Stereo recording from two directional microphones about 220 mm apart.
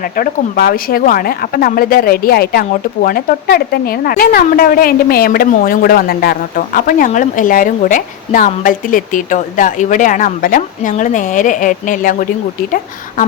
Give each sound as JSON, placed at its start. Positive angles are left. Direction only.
{"t": 0.2, "sound": "speech", "side_deg": 45}